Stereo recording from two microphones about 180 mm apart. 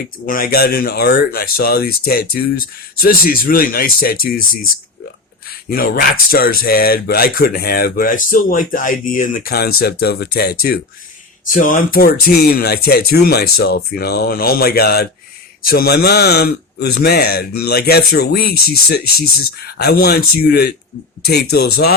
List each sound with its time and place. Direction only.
0.3 s speech: 50° left (ahead or behind)